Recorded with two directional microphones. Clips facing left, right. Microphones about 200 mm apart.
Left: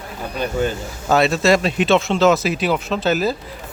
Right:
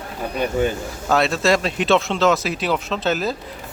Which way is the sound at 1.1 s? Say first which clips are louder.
Left 3 dB; centre (ahead or behind).